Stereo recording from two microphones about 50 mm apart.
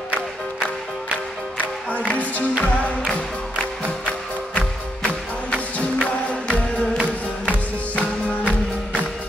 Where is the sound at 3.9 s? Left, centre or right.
Left.